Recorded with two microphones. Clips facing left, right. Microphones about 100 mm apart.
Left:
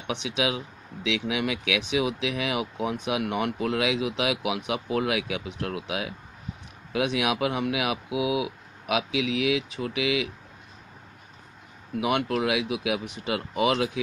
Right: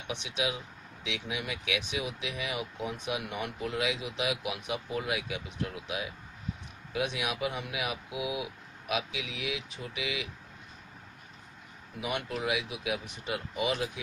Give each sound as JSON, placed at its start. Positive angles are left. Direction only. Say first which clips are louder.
{"t": 0.0, "sound": "speech", "louder": "left 6 dB", "side_deg": 90}
{"t": 12.0, "sound": "speech", "louder": "left 8 dB", "side_deg": 85}